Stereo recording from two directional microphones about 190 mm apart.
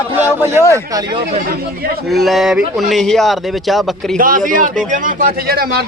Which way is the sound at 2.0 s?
Centre (ahead or behind).